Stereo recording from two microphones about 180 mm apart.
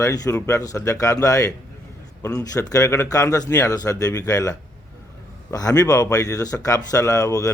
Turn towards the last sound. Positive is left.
turn(degrees=20)  # may be behind; listen again after turning